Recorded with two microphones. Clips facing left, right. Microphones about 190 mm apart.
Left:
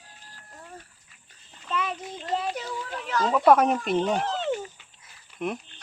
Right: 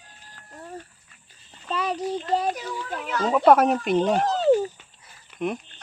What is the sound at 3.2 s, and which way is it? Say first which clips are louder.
Speech: right 2 dB; centre (ahead or behind).